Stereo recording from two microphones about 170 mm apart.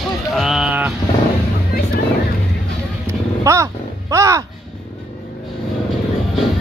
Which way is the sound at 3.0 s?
15° right (ahead or behind).